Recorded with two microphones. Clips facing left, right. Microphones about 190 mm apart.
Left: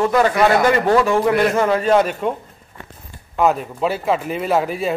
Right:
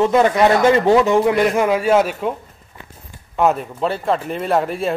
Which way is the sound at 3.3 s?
Centre (ahead or behind).